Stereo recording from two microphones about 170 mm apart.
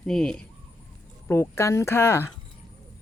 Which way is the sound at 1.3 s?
15° left (ahead or behind).